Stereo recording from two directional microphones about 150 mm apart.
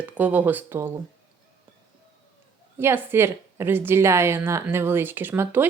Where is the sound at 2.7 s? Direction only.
15° right (ahead or behind).